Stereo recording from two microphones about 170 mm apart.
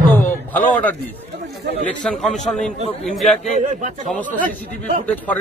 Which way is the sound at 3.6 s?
45° right (ahead or behind).